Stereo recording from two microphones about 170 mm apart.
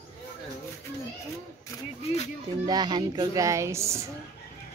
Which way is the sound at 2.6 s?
25° right (ahead or behind).